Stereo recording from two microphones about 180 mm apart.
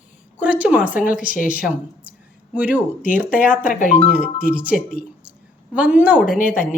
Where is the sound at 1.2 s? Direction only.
50° left (ahead or behind).